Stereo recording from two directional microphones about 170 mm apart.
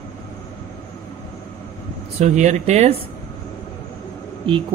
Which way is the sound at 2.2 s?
45° right (ahead or behind).